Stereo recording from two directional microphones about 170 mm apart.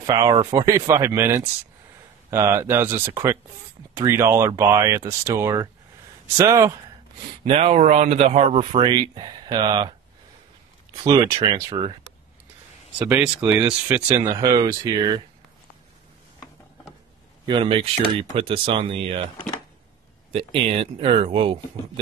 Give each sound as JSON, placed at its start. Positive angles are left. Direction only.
{"t": 0.0, "sound": "speech", "side_deg": -20}
{"t": 7.4, "sound": "speech", "side_deg": -35}
{"t": 8.8, "sound": "speech", "side_deg": -25}
{"t": 11.1, "sound": "speech", "side_deg": -20}
{"t": 13.0, "sound": "speech", "side_deg": -10}
{"t": 17.5, "sound": "speech", "side_deg": -30}
{"t": 20.3, "sound": "speech", "side_deg": -35}